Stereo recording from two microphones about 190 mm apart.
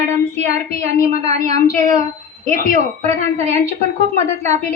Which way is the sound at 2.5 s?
50° left (ahead or behind).